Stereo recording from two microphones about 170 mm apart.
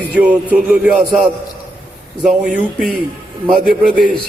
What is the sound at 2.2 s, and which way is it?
Speech, 5° right (ahead or behind).